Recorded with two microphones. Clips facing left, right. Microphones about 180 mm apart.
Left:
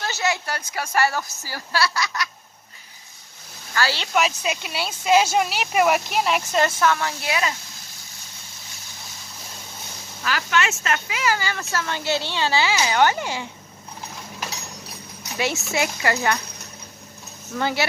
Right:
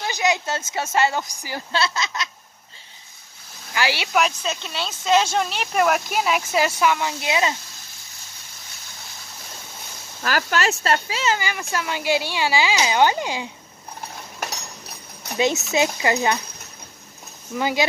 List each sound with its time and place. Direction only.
0.0 s a woman's voice: 15° right (ahead or behind)
3.7 s speech: 15° right (ahead or behind)
4.1 s speech: 5° left (ahead or behind); by 7.5 s 20° right (ahead or behind)
10.2 s speech: 40° right (ahead or behind)
11.3 s speech: 15° right (ahead or behind)
15.3 s a woman's voice: 20° right (ahead or behind)
17.5 s speech: 15° right (ahead or behind)